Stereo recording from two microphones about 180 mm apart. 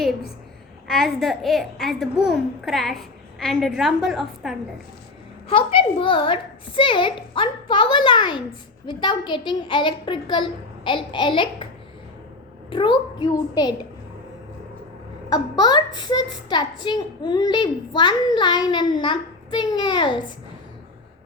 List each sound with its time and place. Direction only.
0.9 s a child's voice: centre (ahead or behind)
5.5 s a child's voice: 30° left (ahead or behind)
12.7 s a child's voice: 25° left (ahead or behind)
15.3 s a child's voice: 25° left (ahead or behind)